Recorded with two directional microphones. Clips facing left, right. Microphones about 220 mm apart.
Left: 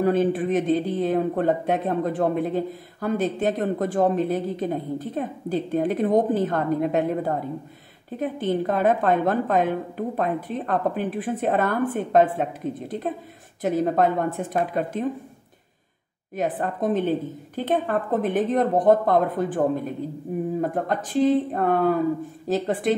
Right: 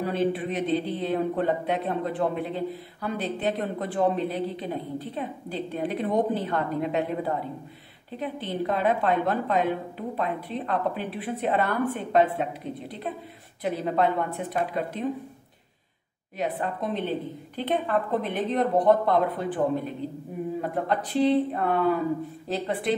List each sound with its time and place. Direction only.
0.0 s speech: 50° left (ahead or behind)
16.3 s speech: 50° left (ahead or behind)